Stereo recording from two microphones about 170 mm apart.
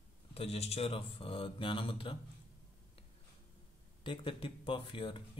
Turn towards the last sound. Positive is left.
turn(degrees=30)  # may be behind; listen again after turning